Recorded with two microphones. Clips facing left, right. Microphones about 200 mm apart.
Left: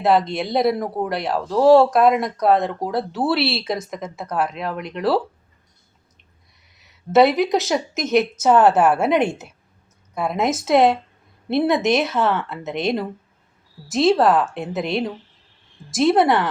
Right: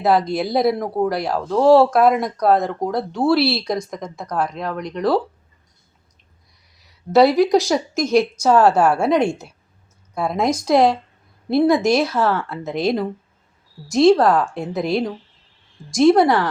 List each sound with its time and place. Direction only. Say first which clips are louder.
0.0 s speech: right 1 dB; centre (ahead or behind)
6.8 s a woman's voice: right 1 dB; centre (ahead or behind)
9.0 s a woman's voice: right 1 dB; 20° left (ahead or behind)
10.2 s speech: right 1 dB; 5° left (ahead or behind)